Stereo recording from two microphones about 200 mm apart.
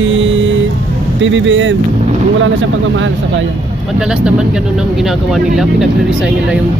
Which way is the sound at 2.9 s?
70° right (ahead or behind).